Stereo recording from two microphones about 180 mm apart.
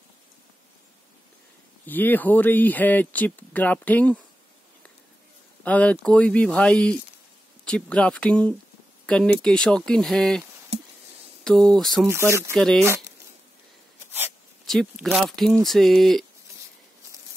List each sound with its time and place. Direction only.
1.9 s speech: 10° left (ahead or behind)
5.6 s speech: 10° left (ahead or behind)
10.7 s a sound: 35° right (ahead or behind)
11.4 s speech: 5° left (ahead or behind)
12.1 s speech: 15° right (ahead or behind)
12.5 s speech: 5° left (ahead or behind)
15.0 s speech: 5° right (ahead or behind)